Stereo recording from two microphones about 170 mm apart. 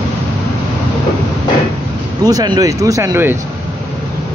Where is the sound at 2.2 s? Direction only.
25° right (ahead or behind).